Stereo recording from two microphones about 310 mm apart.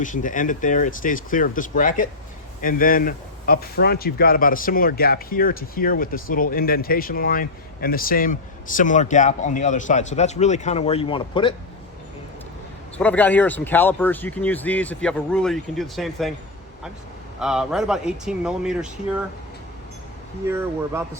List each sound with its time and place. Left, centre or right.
0.0 s speech: left
13.0 s speech: centre
17.4 s speech: centre
20.5 s speech: centre